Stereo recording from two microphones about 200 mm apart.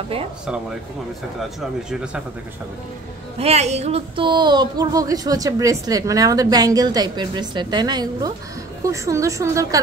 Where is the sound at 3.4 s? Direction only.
30° right (ahead or behind).